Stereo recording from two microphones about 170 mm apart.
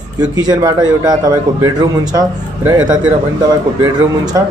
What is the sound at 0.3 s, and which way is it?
A man's voice, 25° right (ahead or behind).